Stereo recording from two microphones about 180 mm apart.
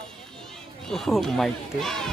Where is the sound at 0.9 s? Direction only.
Centre (ahead or behind).